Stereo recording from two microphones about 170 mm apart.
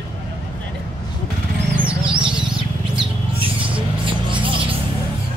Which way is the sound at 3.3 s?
30° right (ahead or behind).